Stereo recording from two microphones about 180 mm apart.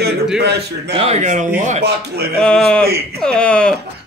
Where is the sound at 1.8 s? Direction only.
65° right (ahead or behind).